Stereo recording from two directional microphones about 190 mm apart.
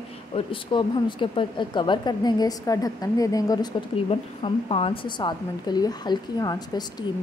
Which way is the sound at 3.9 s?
30° left (ahead or behind).